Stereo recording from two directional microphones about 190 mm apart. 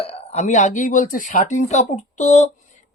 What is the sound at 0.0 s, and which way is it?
Speech, 30° left (ahead or behind).